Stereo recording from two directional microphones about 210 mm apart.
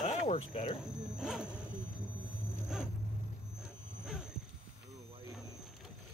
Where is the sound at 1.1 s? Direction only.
5° right (ahead or behind).